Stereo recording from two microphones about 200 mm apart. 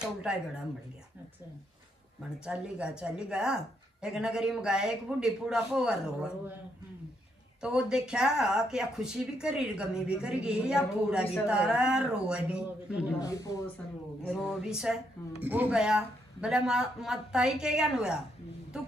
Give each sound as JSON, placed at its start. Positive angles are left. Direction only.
{"t": 0.0, "sound": "speech", "side_deg": -5}
{"t": 2.4, "sound": "speech", "side_deg": -5}
{"t": 7.6, "sound": "speech", "side_deg": -5}
{"t": 13.1, "sound": "speech", "side_deg": 15}
{"t": 14.3, "sound": "speech", "side_deg": 0}